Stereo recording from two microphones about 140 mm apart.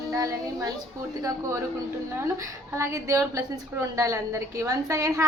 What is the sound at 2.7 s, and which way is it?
A woman's voice, 20° right (ahead or behind).